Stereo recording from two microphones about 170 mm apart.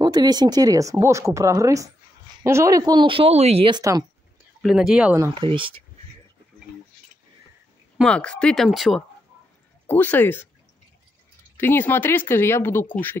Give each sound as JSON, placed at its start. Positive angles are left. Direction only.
{"t": 0.0, "sound": "speech", "side_deg": -25}
{"t": 4.6, "sound": "speech", "side_deg": -5}
{"t": 5.3, "sound": "speech", "side_deg": -30}
{"t": 8.0, "sound": "speech", "side_deg": 5}
{"t": 9.8, "sound": "speech", "side_deg": 10}
{"t": 11.5, "sound": "speech", "side_deg": 10}